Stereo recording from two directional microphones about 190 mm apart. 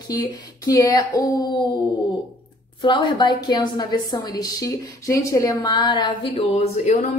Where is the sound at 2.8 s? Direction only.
25° left (ahead or behind).